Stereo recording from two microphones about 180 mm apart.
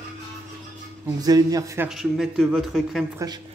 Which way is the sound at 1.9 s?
Centre (ahead or behind).